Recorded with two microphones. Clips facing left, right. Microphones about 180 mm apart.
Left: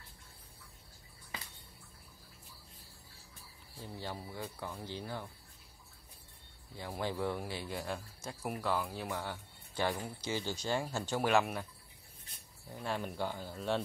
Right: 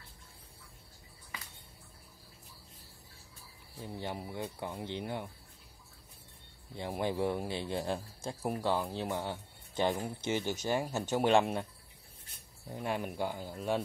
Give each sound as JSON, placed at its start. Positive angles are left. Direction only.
{"t": 3.7, "sound": "a man's voice", "side_deg": -20}
{"t": 6.7, "sound": "a man's voice", "side_deg": -20}
{"t": 12.7, "sound": "a man's voice", "side_deg": -15}